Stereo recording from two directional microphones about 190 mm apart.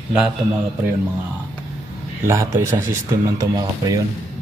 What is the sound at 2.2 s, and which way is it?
Speech, 15° right (ahead or behind).